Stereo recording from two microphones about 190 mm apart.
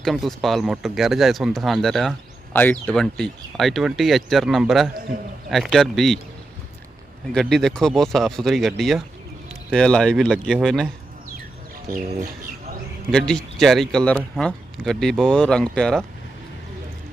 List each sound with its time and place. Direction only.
0.0 s speech: centre (ahead or behind)
7.3 s speech: 5° left (ahead or behind)
9.7 s speech: 5° left (ahead or behind)
11.9 s bird: 45° right (ahead or behind)
13.1 s speech: 5° left (ahead or behind)